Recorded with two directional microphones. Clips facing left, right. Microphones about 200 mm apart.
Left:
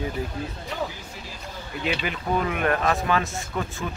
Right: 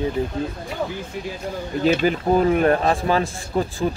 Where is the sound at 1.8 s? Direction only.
40° right (ahead or behind).